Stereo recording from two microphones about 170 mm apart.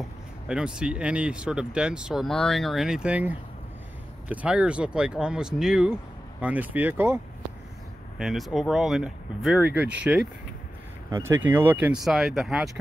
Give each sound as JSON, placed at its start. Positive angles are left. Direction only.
{"t": 0.5, "sound": "speech", "side_deg": -5}
{"t": 8.2, "sound": "speech", "side_deg": 0}
{"t": 11.1, "sound": "speech", "side_deg": -20}